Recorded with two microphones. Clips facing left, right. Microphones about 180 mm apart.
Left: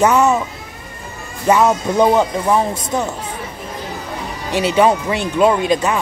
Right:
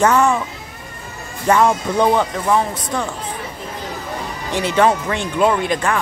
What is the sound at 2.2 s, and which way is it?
Speech, 25° left (ahead or behind).